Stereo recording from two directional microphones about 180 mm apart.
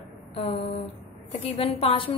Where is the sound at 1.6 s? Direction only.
30° left (ahead or behind).